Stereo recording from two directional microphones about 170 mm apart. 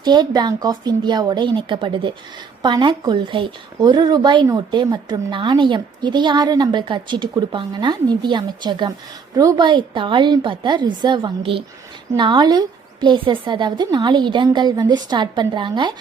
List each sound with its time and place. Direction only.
0.0 s speech: 25° right (ahead or behind)